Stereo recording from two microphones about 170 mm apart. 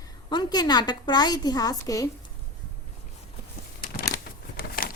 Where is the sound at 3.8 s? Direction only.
65° left (ahead or behind).